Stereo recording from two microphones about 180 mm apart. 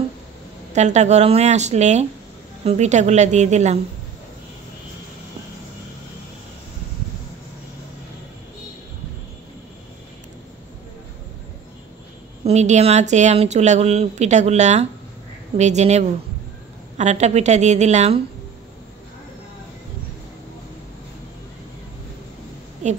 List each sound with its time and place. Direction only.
0.7 s speech: 40° right (ahead or behind)
12.4 s speech: 40° right (ahead or behind)